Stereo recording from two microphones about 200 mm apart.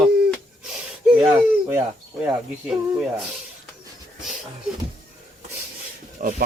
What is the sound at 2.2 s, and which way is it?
Speech, 5° right (ahead or behind).